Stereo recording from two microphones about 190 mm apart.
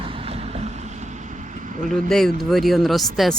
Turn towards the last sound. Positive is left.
turn(degrees=0)  # may be behind; listen again after turning